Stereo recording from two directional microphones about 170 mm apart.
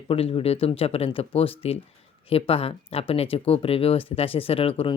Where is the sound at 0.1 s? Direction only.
35° left (ahead or behind).